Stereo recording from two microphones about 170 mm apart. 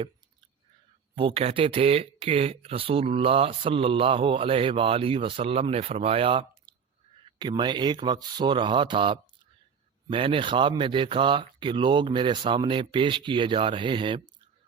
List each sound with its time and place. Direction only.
1.1 s speech: 30° right (ahead or behind)